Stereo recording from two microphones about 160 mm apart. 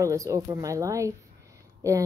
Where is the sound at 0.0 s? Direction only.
20° right (ahead or behind).